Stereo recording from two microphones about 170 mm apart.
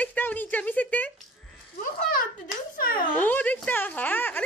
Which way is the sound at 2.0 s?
60° left (ahead or behind).